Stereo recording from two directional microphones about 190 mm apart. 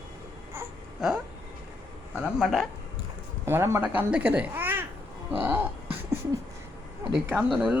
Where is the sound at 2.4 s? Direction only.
Centre (ahead or behind).